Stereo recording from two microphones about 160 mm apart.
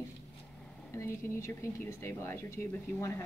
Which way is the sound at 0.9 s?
15° left (ahead or behind).